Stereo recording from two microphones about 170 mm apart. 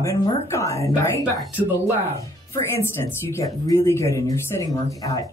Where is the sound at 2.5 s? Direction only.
15° left (ahead or behind).